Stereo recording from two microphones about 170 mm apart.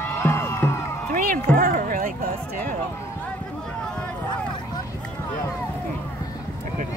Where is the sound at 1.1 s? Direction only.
55° right (ahead or behind).